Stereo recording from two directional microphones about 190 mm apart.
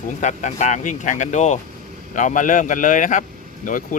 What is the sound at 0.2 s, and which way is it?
Speech, 40° left (ahead or behind).